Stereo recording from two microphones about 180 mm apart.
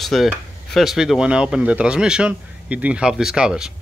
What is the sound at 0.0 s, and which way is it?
Speech, centre (ahead or behind).